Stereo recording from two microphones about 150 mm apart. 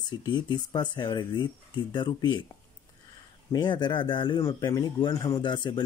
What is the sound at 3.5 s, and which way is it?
Speech, 30° left (ahead or behind).